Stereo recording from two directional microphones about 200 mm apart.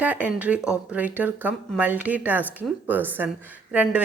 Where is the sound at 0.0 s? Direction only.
10° right (ahead or behind).